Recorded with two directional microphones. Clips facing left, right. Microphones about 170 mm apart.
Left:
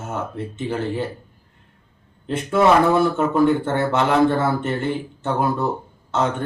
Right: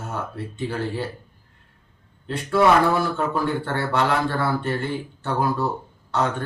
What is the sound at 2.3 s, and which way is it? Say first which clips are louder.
A man's voice: left 2 dB; 20° left (ahead or behind).